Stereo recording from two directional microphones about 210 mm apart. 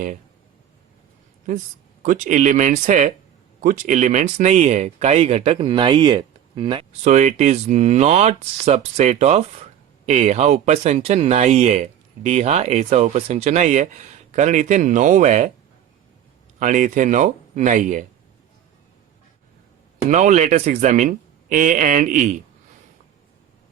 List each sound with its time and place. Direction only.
2.0 s speech: 35° right (ahead or behind)
16.6 s speech: 35° right (ahead or behind)
20.1 s speech: 35° right (ahead or behind)